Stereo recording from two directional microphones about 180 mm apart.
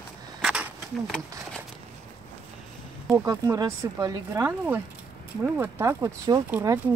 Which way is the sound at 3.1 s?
15° right (ahead or behind).